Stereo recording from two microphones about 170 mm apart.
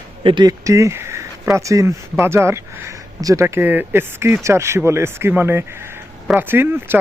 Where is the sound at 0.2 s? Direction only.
30° right (ahead or behind).